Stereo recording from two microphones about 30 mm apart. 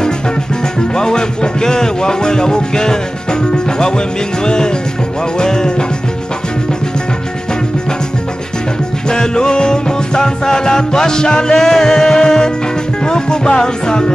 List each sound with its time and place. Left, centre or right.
0.7 s music: left
4.5 s music: left
9.1 s music: left